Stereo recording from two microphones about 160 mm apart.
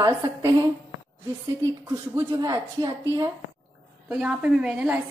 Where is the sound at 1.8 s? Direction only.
25° right (ahead or behind).